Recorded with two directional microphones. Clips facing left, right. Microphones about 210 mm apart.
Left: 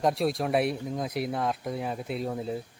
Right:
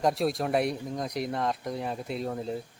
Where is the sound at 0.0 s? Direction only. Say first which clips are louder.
Even; centre (ahead or behind).